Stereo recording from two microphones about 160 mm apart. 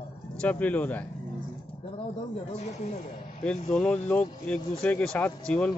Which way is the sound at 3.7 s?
5° left (ahead or behind).